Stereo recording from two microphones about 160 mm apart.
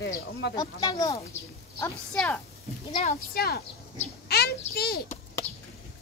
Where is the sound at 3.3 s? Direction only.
75° left (ahead or behind).